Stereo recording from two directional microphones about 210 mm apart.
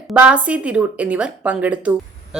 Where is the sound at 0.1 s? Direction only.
5° right (ahead or behind).